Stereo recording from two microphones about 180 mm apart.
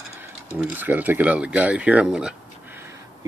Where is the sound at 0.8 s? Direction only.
10° right (ahead or behind).